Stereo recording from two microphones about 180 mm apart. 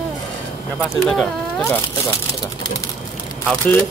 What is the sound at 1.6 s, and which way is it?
Speech, 15° left (ahead or behind).